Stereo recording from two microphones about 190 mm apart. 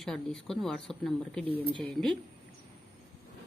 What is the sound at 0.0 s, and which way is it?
A woman's voice, 5° left (ahead or behind).